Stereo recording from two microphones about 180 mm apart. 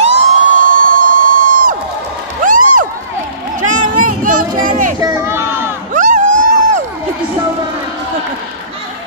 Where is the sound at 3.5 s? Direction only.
45° right (ahead or behind).